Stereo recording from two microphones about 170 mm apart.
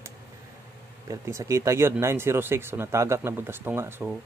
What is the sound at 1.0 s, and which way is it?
Speech, 20° right (ahead or behind).